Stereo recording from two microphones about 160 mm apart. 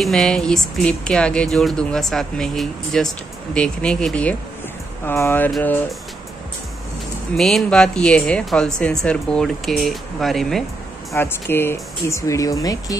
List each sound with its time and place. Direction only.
0.0 s speech: 5° left (ahead or behind)
7.3 s speech: centre (ahead or behind)
11.1 s speech: 15° left (ahead or behind)